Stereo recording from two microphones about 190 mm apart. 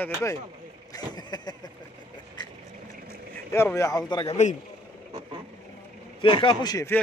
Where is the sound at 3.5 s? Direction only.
15° left (ahead or behind).